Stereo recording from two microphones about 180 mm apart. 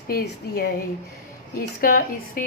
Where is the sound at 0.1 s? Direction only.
55° left (ahead or behind).